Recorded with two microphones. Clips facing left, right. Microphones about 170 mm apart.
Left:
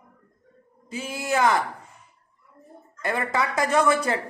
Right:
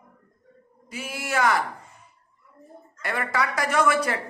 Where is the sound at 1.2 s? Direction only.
25° left (ahead or behind).